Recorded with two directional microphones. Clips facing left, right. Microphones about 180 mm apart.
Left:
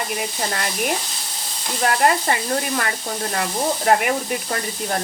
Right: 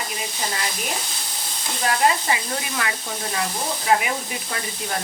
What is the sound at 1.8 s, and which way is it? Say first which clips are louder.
Speech: left 2 dB; 55° left (ahead or behind).